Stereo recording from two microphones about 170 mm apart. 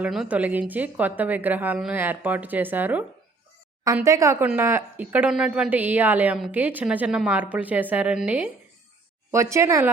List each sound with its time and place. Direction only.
0.0 s speech: 5° right (ahead or behind)